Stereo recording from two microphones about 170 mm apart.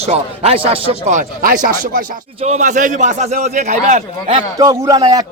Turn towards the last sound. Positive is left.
turn(degrees=-25)  # may be behind; listen again after turning